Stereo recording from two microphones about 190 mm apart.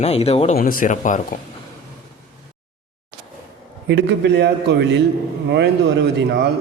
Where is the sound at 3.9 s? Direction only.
65° right (ahead or behind).